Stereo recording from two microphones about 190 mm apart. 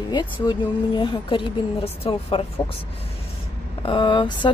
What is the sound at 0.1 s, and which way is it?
Speech, 25° left (ahead or behind).